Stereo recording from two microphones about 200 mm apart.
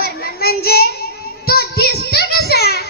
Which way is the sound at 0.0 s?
50° left (ahead or behind).